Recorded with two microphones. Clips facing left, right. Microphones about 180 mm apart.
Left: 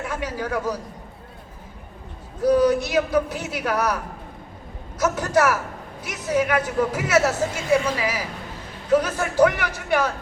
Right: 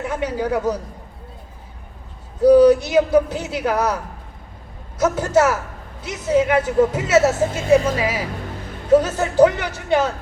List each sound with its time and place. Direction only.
0.0 s speech: 20° right (ahead or behind)
2.9 s speech: 25° right (ahead or behind)